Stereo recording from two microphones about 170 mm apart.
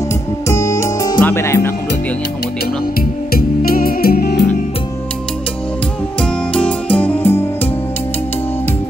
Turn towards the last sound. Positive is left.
turn(degrees=10)  # may be behind; listen again after turning